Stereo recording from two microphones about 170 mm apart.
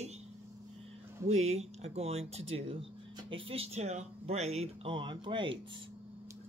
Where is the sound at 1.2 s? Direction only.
40° right (ahead or behind).